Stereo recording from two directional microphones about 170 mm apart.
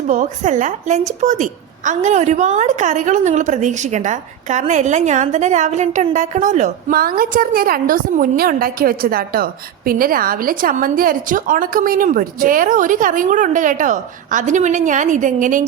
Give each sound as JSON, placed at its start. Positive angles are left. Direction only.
{"t": 0.1, "sound": "a woman's voice", "side_deg": -45}